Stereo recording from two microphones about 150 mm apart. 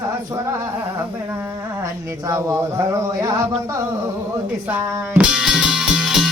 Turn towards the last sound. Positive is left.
turn(degrees=0)  # may be behind; listen again after turning